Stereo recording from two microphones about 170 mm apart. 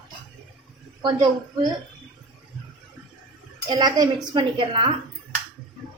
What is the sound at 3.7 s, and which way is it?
A woman's voice, 25° right (ahead or behind).